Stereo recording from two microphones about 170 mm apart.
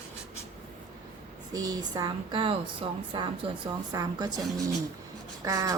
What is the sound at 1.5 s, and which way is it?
Speech, 20° right (ahead or behind).